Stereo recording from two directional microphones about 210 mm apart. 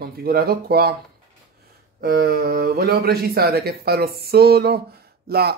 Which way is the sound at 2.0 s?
50° right (ahead or behind).